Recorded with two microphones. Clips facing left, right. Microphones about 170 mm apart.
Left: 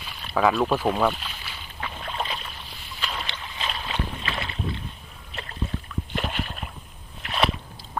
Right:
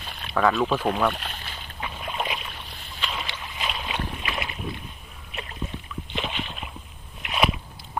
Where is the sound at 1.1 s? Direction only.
60° right (ahead or behind).